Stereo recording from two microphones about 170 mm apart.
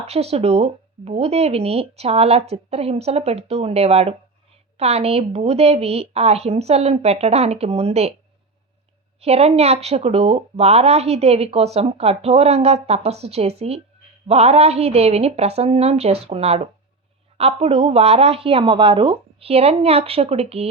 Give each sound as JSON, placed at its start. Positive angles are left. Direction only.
{"t": 0.0, "sound": "speech", "side_deg": -35}
{"t": 9.2, "sound": "speech", "side_deg": -40}